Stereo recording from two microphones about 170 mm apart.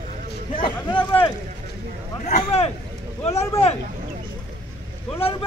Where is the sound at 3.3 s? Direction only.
15° left (ahead or behind).